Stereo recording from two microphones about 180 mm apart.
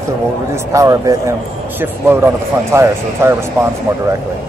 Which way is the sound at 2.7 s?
15° right (ahead or behind).